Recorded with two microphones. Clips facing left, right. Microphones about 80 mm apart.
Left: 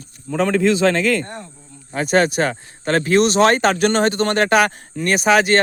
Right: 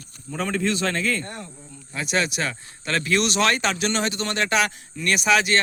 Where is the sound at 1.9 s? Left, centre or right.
Left.